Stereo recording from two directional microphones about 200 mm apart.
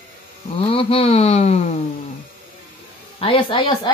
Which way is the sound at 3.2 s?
25° left (ahead or behind).